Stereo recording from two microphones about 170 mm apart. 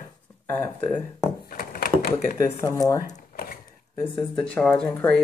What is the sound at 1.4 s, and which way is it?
Typewriter, 60° left (ahead or behind).